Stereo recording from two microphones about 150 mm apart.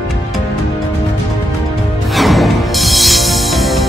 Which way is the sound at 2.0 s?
Centre (ahead or behind).